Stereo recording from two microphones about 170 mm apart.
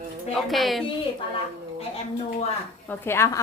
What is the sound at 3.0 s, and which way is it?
Speech, 15° left (ahead or behind).